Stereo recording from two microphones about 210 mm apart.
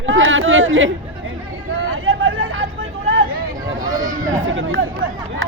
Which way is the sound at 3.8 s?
20° right (ahead or behind).